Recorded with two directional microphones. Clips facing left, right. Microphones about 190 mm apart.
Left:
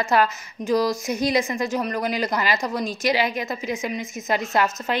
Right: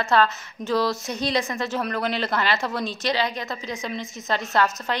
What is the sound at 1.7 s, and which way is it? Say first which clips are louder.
Speech: even; 10° left (ahead or behind).